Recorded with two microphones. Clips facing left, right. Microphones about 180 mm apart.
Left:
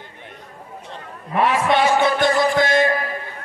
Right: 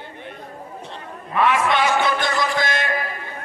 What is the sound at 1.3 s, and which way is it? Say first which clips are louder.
Speech: left 1 dB; 35° left (ahead or behind).